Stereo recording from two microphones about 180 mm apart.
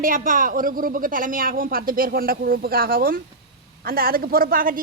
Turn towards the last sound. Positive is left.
turn(degrees=-50)  # may be behind; listen again after turning